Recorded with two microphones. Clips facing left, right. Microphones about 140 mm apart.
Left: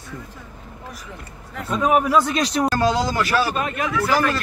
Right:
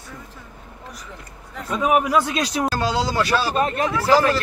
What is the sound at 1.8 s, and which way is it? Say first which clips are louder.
Speech: left 1 dB; 15° right (ahead or behind).